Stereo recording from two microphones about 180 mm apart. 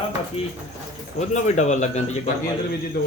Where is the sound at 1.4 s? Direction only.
40° left (ahead or behind).